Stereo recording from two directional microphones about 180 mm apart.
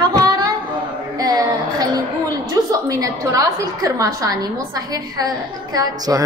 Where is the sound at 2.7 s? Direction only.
20° right (ahead or behind).